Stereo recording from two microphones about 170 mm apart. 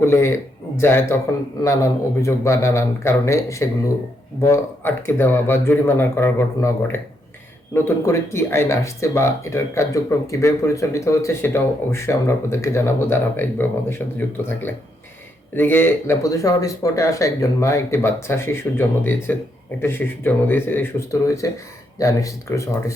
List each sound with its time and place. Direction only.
0.0 s speech: 15° left (ahead or behind)